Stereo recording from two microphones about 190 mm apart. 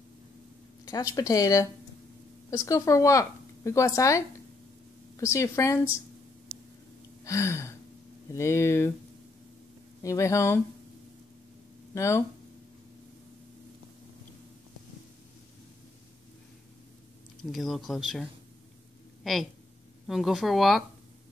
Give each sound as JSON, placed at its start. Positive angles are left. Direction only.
{"t": 0.8, "sound": "a woman's voice", "side_deg": 20}
{"t": 7.2, "sound": "a woman's voice", "side_deg": 15}
{"t": 10.0, "sound": "a woman's voice", "side_deg": 15}
{"t": 11.9, "sound": "speech", "side_deg": 15}
{"t": 17.5, "sound": "speech", "side_deg": 0}
{"t": 20.1, "sound": "speech", "side_deg": 0}